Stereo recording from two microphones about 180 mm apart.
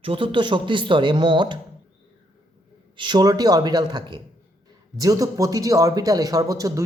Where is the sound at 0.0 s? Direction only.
30° right (ahead or behind).